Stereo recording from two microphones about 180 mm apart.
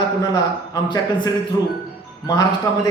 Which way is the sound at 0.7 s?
25° left (ahead or behind).